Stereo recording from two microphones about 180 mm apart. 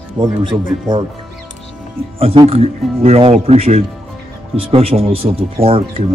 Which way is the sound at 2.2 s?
35° right (ahead or behind).